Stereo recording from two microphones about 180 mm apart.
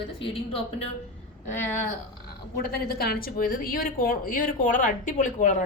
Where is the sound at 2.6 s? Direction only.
60° left (ahead or behind).